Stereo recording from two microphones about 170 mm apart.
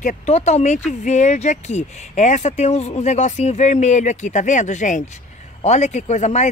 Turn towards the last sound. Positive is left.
turn(degrees=40)  # may be behind; listen again after turning